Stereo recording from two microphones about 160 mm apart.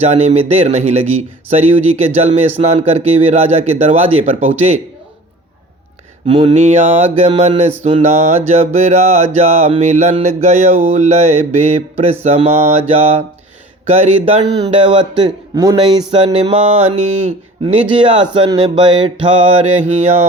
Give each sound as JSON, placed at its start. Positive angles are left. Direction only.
{"t": 0.0, "sound": "music", "side_deg": -45}
{"t": 2.6, "sound": "mantra", "side_deg": -40}
{"t": 6.2, "sound": "mantra", "side_deg": -30}
{"t": 6.5, "sound": "music", "side_deg": -45}
{"t": 12.9, "sound": "mantra", "side_deg": -40}
{"t": 13.8, "sound": "speech", "side_deg": -45}
{"t": 14.6, "sound": "speech", "side_deg": -35}
{"t": 16.1, "sound": "mantra", "side_deg": -35}